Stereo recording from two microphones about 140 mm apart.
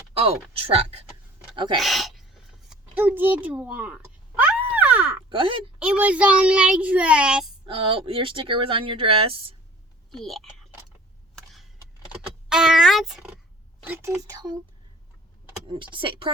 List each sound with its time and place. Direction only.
0.1 s speech: 45° right (ahead or behind)
1.5 s speech: 35° right (ahead or behind)
1.8 s sneeze: centre (ahead or behind)
2.9 s a sound: 15° right (ahead or behind)
5.3 s speech: 40° right (ahead or behind)
5.8 s a child's voice: 10° right (ahead or behind)
7.6 s speech: 40° right (ahead or behind)
10.1 s speech: centre (ahead or behind)
11.3 s a sound: centre (ahead or behind)
12.5 s speech: 5° right (ahead or behind)
13.8 s speech: 15° right (ahead or behind)
15.8 s speech: 35° right (ahead or behind)